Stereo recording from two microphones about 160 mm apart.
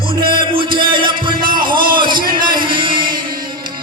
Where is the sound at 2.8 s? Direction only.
30° right (ahead or behind).